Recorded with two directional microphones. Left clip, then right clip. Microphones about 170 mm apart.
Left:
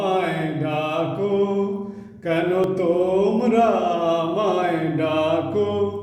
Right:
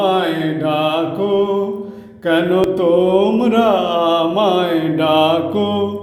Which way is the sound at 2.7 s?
25° right (ahead or behind).